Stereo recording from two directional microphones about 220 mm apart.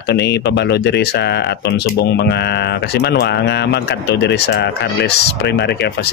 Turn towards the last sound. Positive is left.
turn(degrees=50)  # may be behind; listen again after turning